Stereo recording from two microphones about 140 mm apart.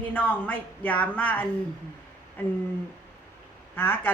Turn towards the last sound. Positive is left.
turn(degrees=15)  # may be behind; listen again after turning